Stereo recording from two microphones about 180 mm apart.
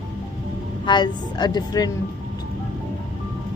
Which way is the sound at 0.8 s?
25° left (ahead or behind).